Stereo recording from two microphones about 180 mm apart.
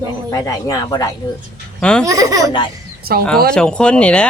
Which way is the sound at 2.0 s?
20° right (ahead or behind).